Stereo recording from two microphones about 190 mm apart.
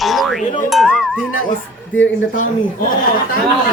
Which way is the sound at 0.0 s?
Centre (ahead or behind).